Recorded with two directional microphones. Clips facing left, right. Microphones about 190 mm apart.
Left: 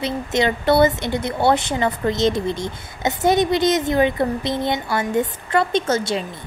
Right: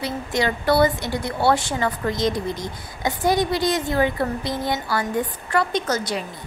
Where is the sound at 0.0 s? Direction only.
20° left (ahead or behind).